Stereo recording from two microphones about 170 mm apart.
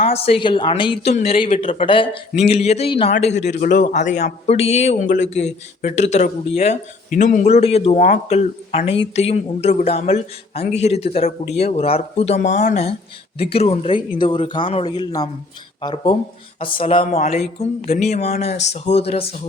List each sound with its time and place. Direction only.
0.0 s speech: 35° left (ahead or behind)